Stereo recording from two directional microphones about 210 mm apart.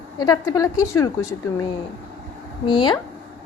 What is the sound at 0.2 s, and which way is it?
Speech, 15° left (ahead or behind).